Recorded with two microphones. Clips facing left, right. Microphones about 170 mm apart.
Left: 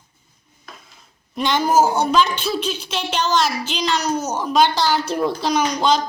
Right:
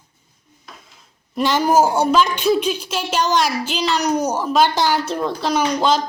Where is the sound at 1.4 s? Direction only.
5° right (ahead or behind).